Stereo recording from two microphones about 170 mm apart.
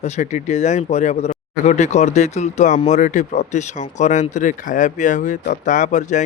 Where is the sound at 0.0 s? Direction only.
45° left (ahead or behind).